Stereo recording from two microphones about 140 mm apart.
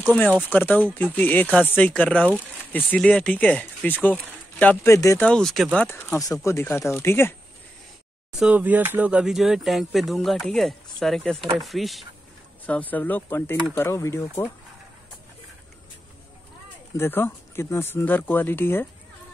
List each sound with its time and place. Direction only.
0.1 s speech: 10° left (ahead or behind)
4.9 s speech: 20° left (ahead or behind)
5.2 s speech: 5° left (ahead or behind)
5.9 s speech: 20° left (ahead or behind)
8.4 s speech: 10° right (ahead or behind)
12.6 s speech: 10° left (ahead or behind)
16.9 s speech: 15° left (ahead or behind)